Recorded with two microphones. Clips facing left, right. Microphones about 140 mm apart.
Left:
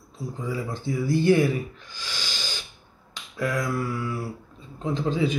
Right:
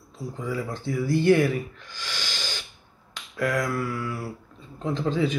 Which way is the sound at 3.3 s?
10° left (ahead or behind).